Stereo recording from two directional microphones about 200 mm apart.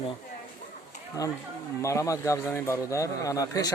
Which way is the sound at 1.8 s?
15° left (ahead or behind).